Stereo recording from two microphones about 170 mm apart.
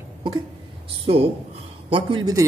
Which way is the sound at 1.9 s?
30° right (ahead or behind).